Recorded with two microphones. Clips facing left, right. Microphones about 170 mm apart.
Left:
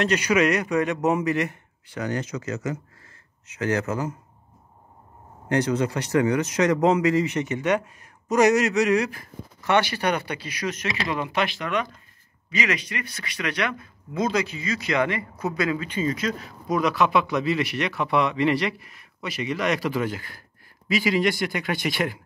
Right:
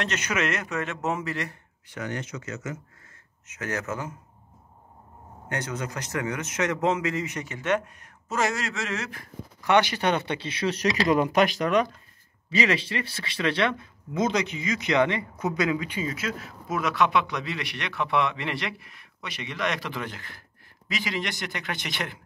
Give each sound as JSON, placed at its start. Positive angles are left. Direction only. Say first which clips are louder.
{"t": 0.0, "sound": "speech", "louder": "left 7 dB", "side_deg": 10}
{"t": 1.9, "sound": "speech", "louder": "left 5 dB", "side_deg": 35}
{"t": 5.5, "sound": "speech", "louder": "left 9 dB", "side_deg": 30}
{"t": 7.4, "sound": "speech", "louder": "left 3 dB", "side_deg": 15}
{"t": 9.6, "sound": "speech", "louder": "even", "side_deg": -15}
{"t": 11.1, "sound": "speech", "louder": "right 5 dB", "side_deg": -45}